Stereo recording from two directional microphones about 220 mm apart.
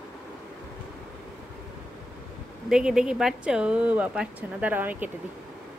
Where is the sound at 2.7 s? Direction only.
5° right (ahead or behind).